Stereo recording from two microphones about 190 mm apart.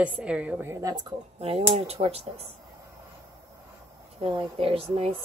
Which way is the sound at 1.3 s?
30° right (ahead or behind).